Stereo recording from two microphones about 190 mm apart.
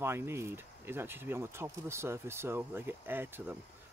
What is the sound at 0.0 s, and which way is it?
Speech, 10° right (ahead or behind).